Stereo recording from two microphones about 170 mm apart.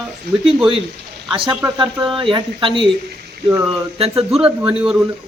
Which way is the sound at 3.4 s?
10° right (ahead or behind).